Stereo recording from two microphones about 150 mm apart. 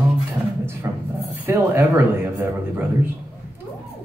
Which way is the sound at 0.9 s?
20° right (ahead or behind).